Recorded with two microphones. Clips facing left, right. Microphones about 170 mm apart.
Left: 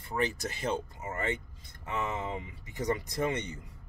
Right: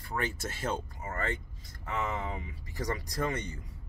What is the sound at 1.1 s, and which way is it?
Speech, 20° left (ahead or behind).